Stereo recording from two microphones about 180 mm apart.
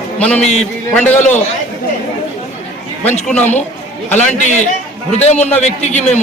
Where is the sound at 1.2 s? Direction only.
40° left (ahead or behind).